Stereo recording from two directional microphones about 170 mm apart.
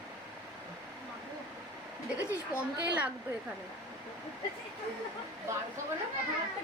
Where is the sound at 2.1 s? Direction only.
15° left (ahead or behind).